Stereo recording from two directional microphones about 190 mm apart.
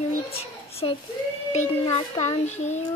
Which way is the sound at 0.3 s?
30° left (ahead or behind).